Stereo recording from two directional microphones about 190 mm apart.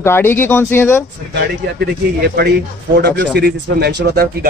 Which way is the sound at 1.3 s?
60° right (ahead or behind).